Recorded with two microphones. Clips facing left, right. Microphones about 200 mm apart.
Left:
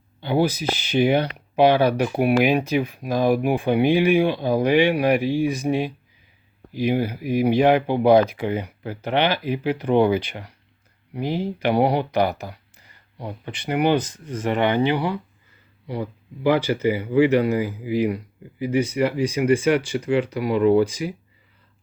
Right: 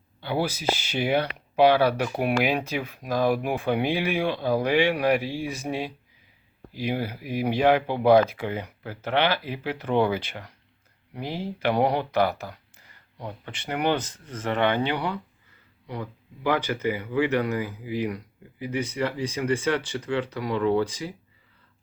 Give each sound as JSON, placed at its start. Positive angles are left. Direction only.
{"t": 0.2, "sound": "speech", "side_deg": 20}